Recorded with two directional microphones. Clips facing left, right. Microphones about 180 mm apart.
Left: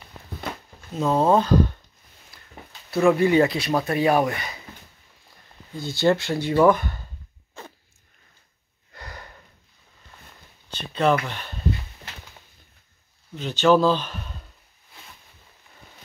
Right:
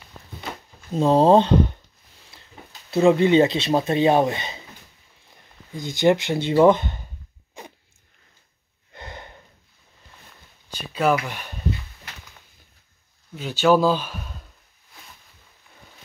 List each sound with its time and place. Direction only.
0.9 s speech: 30° right (ahead or behind)
2.9 s speech: 25° right (ahead or behind)
5.7 s speech: 15° right (ahead or behind)
7.6 s dog: 15° right (ahead or behind)
8.9 s a sound: 25° right (ahead or behind)
10.7 s speech: 10° right (ahead or behind)
13.3 s speech: 10° right (ahead or behind)